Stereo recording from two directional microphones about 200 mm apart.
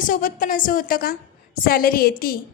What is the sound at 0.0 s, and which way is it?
A woman's voice, 45° left (ahead or behind).